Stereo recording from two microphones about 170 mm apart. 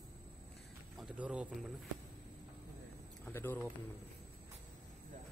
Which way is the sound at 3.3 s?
10° left (ahead or behind).